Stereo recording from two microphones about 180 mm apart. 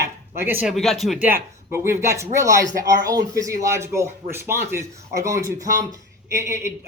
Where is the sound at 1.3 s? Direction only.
10° right (ahead or behind).